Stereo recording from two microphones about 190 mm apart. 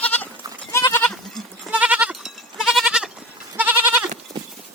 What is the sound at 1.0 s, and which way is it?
Goat, centre (ahead or behind).